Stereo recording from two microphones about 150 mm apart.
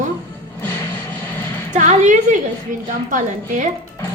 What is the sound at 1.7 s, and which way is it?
A woman's voice, 50° right (ahead or behind).